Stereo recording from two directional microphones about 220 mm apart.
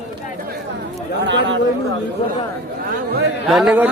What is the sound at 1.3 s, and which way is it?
Chatter, 55° right (ahead or behind).